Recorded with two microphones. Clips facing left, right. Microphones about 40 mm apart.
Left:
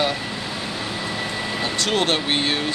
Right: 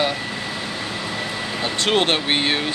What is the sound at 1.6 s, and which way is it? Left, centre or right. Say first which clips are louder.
Speech: right 3 dB; right.